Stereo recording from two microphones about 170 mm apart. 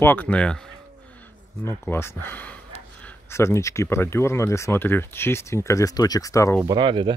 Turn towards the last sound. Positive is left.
turn(degrees=-30)  # may be behind; listen again after turning